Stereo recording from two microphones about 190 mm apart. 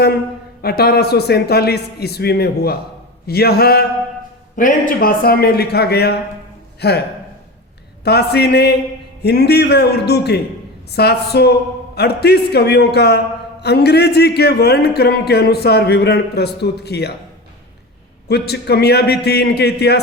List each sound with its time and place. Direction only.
0.6 s a man's voice: 55° left (ahead or behind)
4.5 s a man's voice: 45° left (ahead or behind)
8.0 s a man's voice: 60° left (ahead or behind)
18.3 s a man's voice: 60° left (ahead or behind)